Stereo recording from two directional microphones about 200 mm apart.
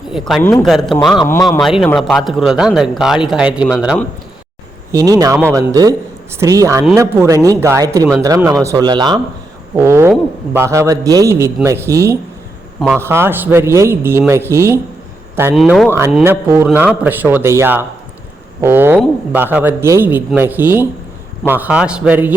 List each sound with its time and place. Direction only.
0.1 s a man's voice: centre (ahead or behind)
4.9 s a man's voice: 15° right (ahead or behind)
15.5 s a man's voice: centre (ahead or behind)
16.2 s a man's voice: 10° right (ahead or behind)